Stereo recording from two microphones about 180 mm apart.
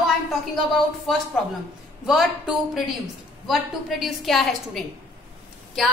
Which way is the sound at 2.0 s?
Centre (ahead or behind).